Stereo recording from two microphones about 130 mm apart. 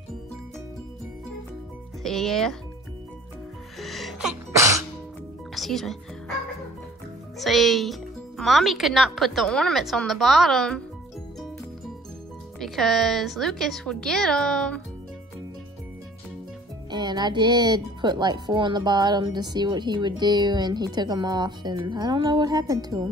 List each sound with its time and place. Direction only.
2.0 s speech: centre (ahead or behind)
3.8 s music: centre (ahead or behind)
4.5 s music: 25° right (ahead or behind)
5.5 s music: centre (ahead or behind)
7.3 s speech: centre (ahead or behind)
12.5 s speech: centre (ahead or behind)
16.9 s speech: 35° right (ahead or behind)